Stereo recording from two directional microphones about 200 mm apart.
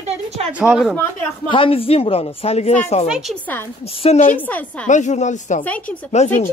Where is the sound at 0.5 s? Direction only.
5° right (ahead or behind).